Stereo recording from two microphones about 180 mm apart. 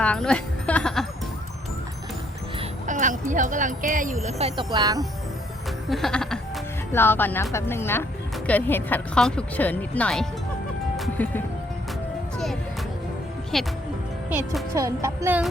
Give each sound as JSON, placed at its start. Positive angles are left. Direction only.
{"t": 0.0, "sound": "music", "side_deg": 5}
{"t": 2.8, "sound": "speech", "side_deg": -45}
{"t": 5.9, "sound": "music", "side_deg": 5}
{"t": 6.9, "sound": "speech", "side_deg": 10}
{"t": 10.9, "sound": "music", "side_deg": 0}
{"t": 13.5, "sound": "music", "side_deg": 0}
{"t": 14.7, "sound": "speech", "side_deg": -15}